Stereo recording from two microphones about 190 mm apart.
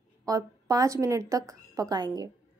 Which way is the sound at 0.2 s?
20° right (ahead or behind).